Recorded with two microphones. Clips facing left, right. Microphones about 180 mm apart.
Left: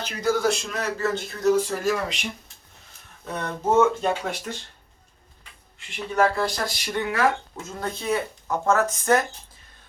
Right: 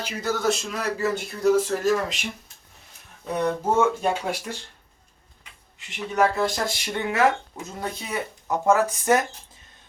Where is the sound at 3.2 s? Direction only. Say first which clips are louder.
Right 3 dB; 10° right (ahead or behind).